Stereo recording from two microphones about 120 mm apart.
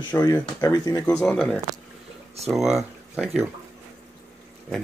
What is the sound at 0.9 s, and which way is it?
Speech, 5° left (ahead or behind).